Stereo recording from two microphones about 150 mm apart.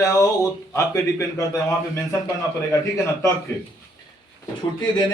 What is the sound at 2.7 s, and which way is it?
Speech, 20° left (ahead or behind).